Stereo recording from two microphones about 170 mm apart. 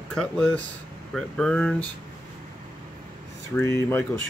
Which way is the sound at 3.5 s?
15° left (ahead or behind).